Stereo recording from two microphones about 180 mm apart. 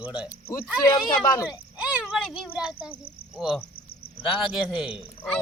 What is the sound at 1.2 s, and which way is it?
Speech, 15° left (ahead or behind).